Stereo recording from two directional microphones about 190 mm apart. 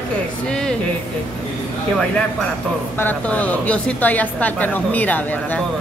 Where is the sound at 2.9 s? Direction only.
10° left (ahead or behind).